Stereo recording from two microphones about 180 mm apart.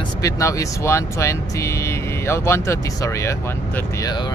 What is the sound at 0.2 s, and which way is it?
Speech, 15° left (ahead or behind).